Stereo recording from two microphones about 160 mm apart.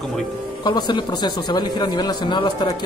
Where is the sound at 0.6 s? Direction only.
30° left (ahead or behind).